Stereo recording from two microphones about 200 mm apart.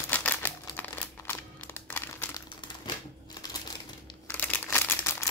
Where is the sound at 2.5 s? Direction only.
20° left (ahead or behind).